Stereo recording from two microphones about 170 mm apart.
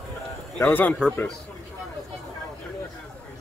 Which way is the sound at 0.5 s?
10° left (ahead or behind).